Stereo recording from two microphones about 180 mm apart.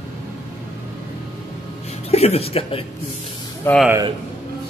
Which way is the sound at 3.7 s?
10° left (ahead or behind).